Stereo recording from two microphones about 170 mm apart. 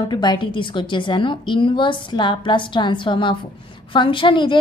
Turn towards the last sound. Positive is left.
turn(degrees=30)  # may be behind; listen again after turning